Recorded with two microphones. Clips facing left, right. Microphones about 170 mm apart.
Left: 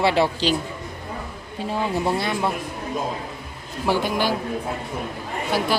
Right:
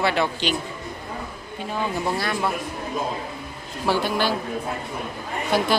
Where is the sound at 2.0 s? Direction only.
25° left (ahead or behind).